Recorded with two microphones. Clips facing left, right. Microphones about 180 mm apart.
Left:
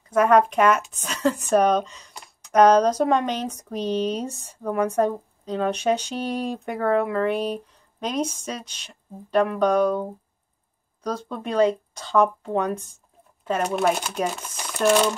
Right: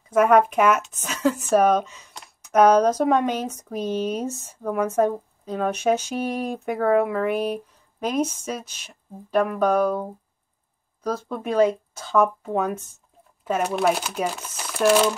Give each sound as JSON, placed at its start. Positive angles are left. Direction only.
{"t": 0.1, "sound": "speech", "side_deg": -10}
{"t": 11.1, "sound": "speech", "side_deg": -5}